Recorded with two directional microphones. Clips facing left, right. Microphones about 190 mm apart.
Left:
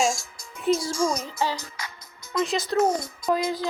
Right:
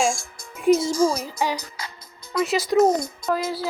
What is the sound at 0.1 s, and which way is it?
Music, 55° right (ahead or behind).